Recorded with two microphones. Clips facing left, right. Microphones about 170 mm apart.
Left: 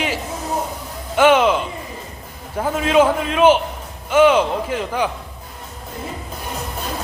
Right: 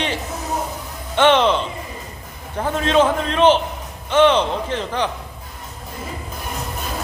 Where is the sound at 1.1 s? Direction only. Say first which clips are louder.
Left 1 dB; 10° left (ahead or behind).